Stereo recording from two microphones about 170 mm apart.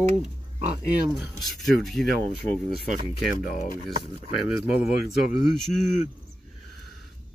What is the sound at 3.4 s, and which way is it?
Speech, 50° left (ahead or behind).